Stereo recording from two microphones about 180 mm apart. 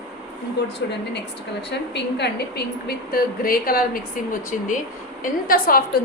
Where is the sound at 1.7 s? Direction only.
70° left (ahead or behind); by 4.0 s 55° left (ahead or behind).